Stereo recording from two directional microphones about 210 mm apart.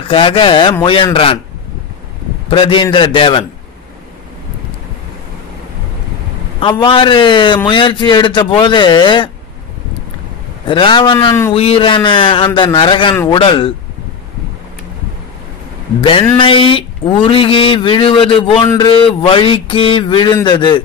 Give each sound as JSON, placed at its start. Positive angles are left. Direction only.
{"t": 0.0, "sound": "a man's voice", "side_deg": 25}
{"t": 2.5, "sound": "a man's voice", "side_deg": 25}
{"t": 6.8, "sound": "a man's voice", "side_deg": 25}
{"t": 10.7, "sound": "a man's voice", "side_deg": 25}
{"t": 16.0, "sound": "a man's voice", "side_deg": 25}